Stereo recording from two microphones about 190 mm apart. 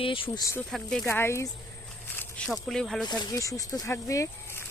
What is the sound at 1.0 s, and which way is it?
Speech, 15° left (ahead or behind).